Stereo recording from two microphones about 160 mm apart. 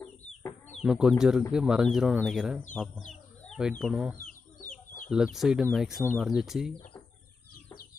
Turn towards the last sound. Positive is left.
turn(degrees=0)  # may be behind; listen again after turning